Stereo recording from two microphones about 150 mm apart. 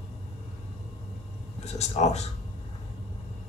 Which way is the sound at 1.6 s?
45° left (ahead or behind).